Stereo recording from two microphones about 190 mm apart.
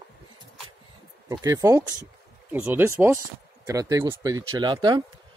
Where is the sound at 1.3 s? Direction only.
15° right (ahead or behind).